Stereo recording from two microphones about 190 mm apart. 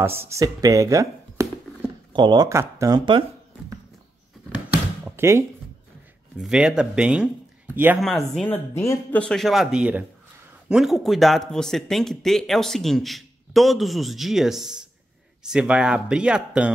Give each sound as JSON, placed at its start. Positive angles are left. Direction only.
{"t": 0.0, "sound": "speech", "side_deg": -10}
{"t": 5.0, "sound": "music", "side_deg": -15}
{"t": 6.3, "sound": "speech", "side_deg": -5}
{"t": 8.0, "sound": "speech", "side_deg": 0}